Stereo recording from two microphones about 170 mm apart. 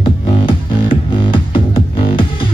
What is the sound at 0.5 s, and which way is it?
Music, 30° left (ahead or behind).